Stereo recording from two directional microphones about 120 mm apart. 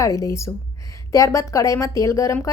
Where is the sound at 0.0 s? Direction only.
25° left (ahead or behind).